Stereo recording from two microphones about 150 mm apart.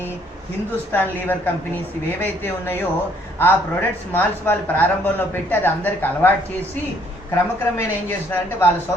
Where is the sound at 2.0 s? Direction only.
15° left (ahead or behind).